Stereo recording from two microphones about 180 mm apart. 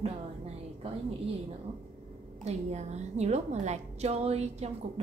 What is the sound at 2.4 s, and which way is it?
A woman's voice, 40° right (ahead or behind).